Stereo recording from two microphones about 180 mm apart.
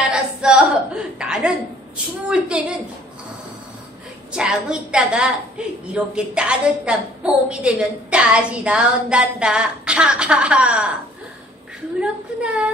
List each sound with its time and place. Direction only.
0.1 s a woman's voice: 5° right (ahead or behind)
4.3 s a woman's voice: 5° right (ahead or behind)
12.0 s a woman's voice: 5° right (ahead or behind)